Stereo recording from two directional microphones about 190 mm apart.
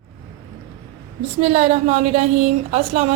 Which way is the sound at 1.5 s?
35° right (ahead or behind).